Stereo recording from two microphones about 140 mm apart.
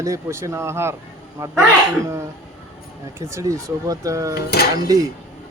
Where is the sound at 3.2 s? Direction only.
20° right (ahead or behind).